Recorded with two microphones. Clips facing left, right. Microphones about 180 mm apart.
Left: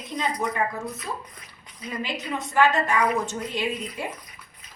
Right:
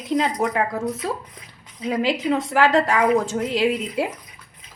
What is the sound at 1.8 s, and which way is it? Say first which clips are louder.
Speech: right 10 dB; 90° right.